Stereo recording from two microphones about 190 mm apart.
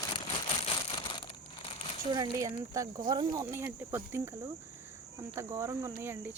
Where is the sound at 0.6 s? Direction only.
25° left (ahead or behind).